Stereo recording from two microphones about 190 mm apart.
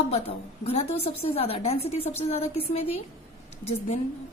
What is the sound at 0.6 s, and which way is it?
A woman's voice, 35° left (ahead or behind).